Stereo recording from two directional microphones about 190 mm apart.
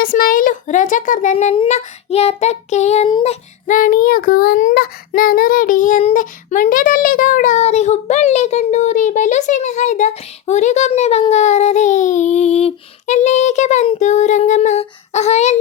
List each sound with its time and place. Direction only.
0.0 s child singing: 50° left (ahead or behind); by 3.3 s 30° left (ahead or behind)
3.7 s child singing: 45° left (ahead or behind)